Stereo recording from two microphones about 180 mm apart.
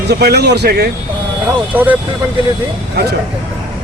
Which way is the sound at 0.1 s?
65° right (ahead or behind).